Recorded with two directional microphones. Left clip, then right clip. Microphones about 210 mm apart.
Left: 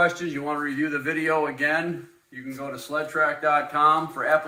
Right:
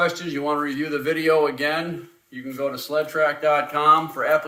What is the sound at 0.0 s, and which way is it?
A man's voice, 60° right (ahead or behind).